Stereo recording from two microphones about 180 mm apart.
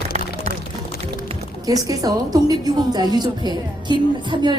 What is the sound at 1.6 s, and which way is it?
Speech, 20° right (ahead or behind).